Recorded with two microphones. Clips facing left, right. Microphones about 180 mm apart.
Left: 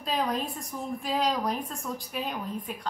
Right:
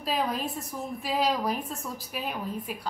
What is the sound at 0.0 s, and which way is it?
A woman's voice, 5° right (ahead or behind).